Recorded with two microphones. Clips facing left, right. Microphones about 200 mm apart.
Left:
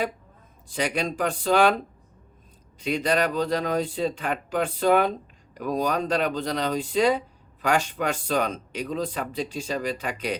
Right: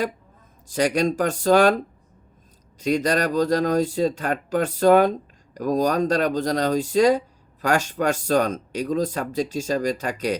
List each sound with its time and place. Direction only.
0.7 s speech: 40° right (ahead or behind)
2.7 s speech: 40° right (ahead or behind)